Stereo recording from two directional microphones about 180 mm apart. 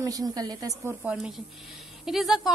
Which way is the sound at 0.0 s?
20° right (ahead or behind).